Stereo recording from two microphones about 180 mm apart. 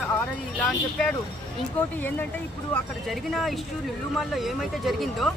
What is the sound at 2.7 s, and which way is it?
Speech, centre (ahead or behind).